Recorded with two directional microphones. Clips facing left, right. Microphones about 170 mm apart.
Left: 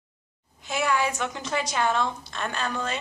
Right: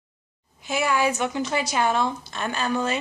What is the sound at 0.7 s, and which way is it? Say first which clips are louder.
A woman's voice: right 3 dB; 5° right (ahead or behind).